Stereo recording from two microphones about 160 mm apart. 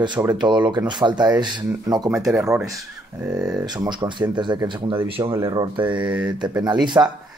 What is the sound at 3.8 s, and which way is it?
Speech, 30° right (ahead or behind).